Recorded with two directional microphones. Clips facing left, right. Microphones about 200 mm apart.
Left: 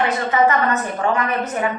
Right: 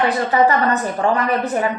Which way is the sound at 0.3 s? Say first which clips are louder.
Even; 35° right (ahead or behind).